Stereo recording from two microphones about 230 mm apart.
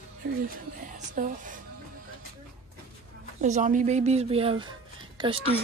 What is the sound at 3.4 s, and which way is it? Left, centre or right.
Speech, right.